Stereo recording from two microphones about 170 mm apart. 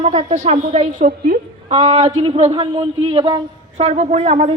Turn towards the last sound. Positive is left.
turn(degrees=-35)  # may be behind; listen again after turning